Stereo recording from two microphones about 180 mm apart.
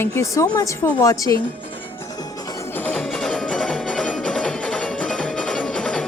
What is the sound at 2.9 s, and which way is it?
Music, 5° left (ahead or behind).